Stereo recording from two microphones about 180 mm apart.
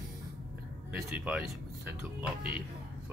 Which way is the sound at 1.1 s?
5° right (ahead or behind).